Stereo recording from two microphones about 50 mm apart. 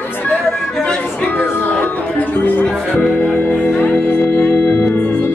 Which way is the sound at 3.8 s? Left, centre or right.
Left.